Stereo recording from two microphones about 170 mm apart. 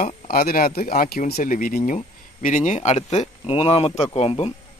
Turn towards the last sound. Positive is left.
turn(degrees=35)  # may be behind; listen again after turning